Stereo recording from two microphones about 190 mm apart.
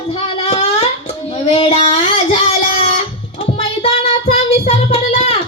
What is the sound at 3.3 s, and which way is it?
Child singing, 30° left (ahead or behind).